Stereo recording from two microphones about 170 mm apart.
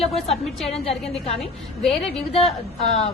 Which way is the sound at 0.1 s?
Centre (ahead or behind).